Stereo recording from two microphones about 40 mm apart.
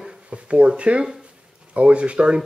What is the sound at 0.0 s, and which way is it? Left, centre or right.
Speech, right.